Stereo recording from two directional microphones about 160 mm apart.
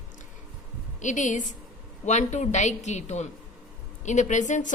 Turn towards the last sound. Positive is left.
turn(degrees=50)  # may be behind; listen again after turning